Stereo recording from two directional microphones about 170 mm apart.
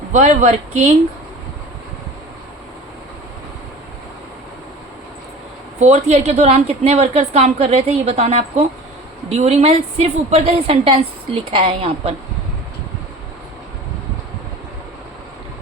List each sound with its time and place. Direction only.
0.1 s speech: 45° right (ahead or behind)
5.8 s a woman's voice: 40° right (ahead or behind)